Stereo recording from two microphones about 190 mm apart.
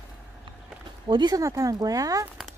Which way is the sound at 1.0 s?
25° right (ahead or behind).